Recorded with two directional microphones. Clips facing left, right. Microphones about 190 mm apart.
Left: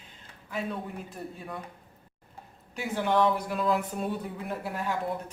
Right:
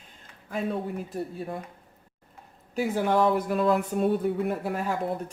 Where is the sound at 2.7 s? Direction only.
40° right (ahead or behind).